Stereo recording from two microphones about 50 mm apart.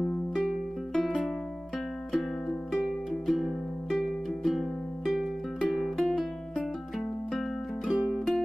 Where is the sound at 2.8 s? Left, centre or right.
Centre.